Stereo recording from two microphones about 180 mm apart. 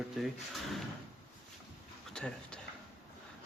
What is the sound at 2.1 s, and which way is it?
Speech, 5° left (ahead or behind).